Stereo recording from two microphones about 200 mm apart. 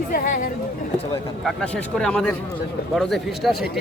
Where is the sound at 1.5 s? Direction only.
5° left (ahead or behind).